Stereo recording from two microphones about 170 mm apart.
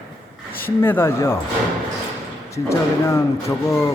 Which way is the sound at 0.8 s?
15° left (ahead or behind).